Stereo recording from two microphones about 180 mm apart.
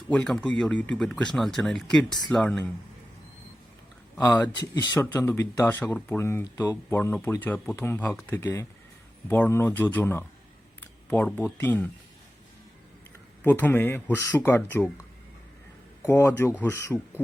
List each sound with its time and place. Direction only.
0.1 s speech: 5° left (ahead or behind)
4.2 s speech: 10° left (ahead or behind)
4.4 s speech: 25° left (ahead or behind)
10.8 s a sound: 10° left (ahead or behind)
11.5 s speech: 10° left (ahead or behind)
13.4 s speech: 10° left (ahead or behind)
16.0 s speech: 15° left (ahead or behind)